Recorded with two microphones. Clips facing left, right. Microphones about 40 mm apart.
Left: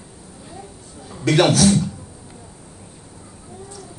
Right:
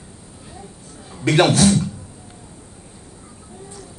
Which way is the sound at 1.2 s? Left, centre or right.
Right.